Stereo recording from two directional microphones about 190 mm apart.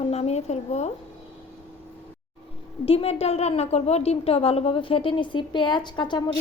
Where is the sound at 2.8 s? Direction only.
30° left (ahead or behind).